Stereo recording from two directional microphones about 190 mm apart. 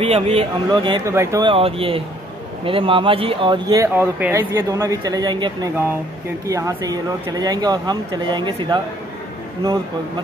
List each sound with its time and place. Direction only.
0.0 s speech: 30° right (ahead or behind)
1.5 s speech: 30° right (ahead or behind)